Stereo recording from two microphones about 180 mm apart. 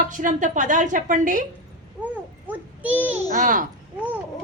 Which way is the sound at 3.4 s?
45° right (ahead or behind).